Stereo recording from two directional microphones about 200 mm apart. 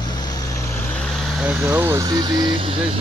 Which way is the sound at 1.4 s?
5° right (ahead or behind).